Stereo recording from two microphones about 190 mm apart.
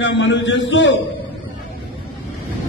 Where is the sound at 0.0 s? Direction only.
75° left (ahead or behind).